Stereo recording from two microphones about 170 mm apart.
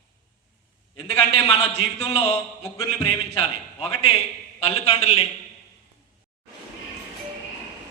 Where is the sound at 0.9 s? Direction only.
35° left (ahead or behind).